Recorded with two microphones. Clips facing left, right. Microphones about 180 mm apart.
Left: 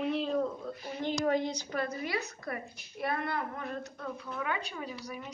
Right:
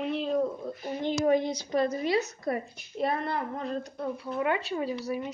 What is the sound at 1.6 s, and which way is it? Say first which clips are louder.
A woman's voice: right 8 dB; 20° right (ahead or behind).